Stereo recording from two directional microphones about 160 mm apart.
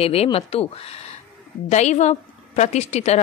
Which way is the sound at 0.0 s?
40° left (ahead or behind).